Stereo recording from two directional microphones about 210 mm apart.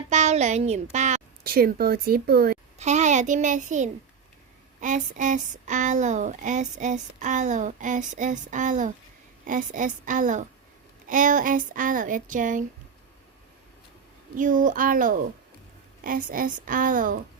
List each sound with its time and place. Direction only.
0.1 s a sound: 30° right (ahead or behind)
0.9 s speech: 35° right (ahead or behind)
2.7 s a child's voice: 35° right (ahead or behind)
14.3 s speech: 40° right (ahead or behind)